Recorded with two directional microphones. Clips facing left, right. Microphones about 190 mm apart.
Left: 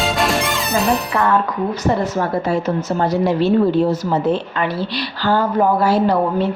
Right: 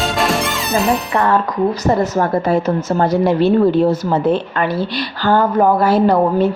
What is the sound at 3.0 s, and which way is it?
Speech, 55° right (ahead or behind).